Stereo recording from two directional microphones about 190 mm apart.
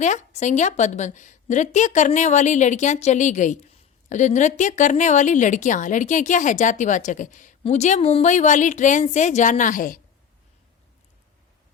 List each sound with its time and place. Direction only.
0.0 s a woman's voice: 40° left (ahead or behind)